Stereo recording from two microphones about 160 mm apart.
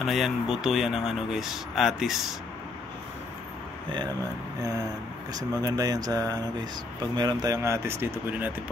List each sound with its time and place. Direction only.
0.0 s speech: centre (ahead or behind)
5.3 s speech: 25° right (ahead or behind)